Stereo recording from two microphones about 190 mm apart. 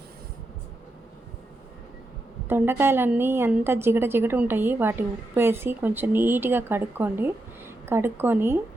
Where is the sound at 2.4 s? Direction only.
10° right (ahead or behind).